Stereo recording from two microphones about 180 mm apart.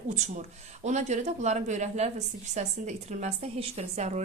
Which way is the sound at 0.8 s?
40° right (ahead or behind).